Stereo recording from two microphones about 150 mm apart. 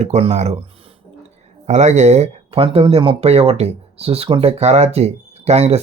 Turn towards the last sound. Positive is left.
turn(degrees=-45)  # may be behind; listen again after turning